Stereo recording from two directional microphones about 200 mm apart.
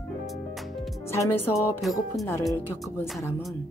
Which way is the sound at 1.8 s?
Centre (ahead or behind).